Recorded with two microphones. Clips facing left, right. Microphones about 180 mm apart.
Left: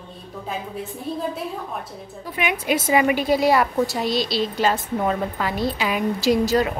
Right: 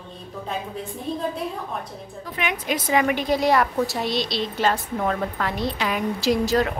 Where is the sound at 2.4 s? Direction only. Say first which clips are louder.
Left 4 dB; 10° left (ahead or behind).